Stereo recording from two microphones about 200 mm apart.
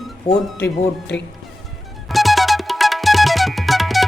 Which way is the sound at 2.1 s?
Centre (ahead or behind).